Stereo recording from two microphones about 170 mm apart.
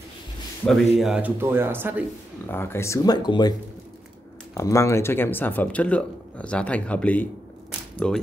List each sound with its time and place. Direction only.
0.7 s speech: centre (ahead or behind)
2.4 s speech: 15° left (ahead or behind)
4.6 s speech: 15° left (ahead or behind)